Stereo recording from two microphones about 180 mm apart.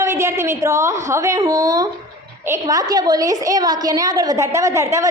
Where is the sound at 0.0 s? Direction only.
15° right (ahead or behind).